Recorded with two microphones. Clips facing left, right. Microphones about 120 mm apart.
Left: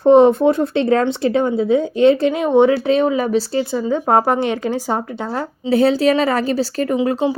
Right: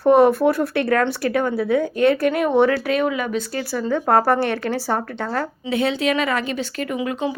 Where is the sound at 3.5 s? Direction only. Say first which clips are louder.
Left 4 dB; 20° left (ahead or behind).